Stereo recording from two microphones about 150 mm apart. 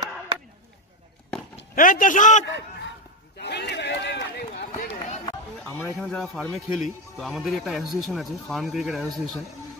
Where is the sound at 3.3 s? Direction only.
90° left.